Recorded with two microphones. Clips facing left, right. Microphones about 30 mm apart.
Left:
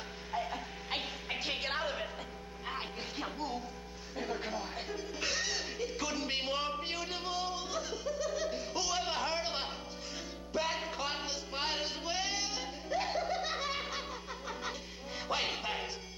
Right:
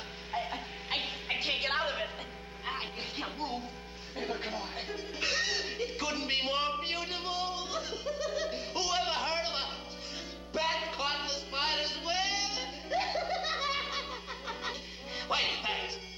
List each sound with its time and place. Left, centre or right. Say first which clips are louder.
0.3 s music: right 1 dB; right
4.2 s speech: right 1 dB; right
10.5 s music: right 3 dB; right